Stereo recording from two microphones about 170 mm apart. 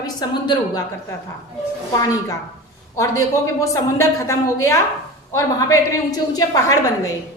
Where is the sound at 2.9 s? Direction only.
20° left (ahead or behind).